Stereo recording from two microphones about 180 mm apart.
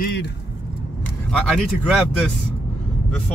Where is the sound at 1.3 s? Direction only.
Centre (ahead or behind).